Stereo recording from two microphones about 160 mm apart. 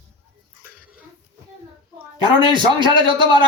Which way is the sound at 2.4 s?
30° right (ahead or behind).